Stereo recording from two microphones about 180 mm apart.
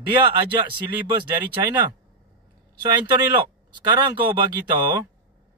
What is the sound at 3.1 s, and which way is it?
Speech, 25° right (ahead or behind).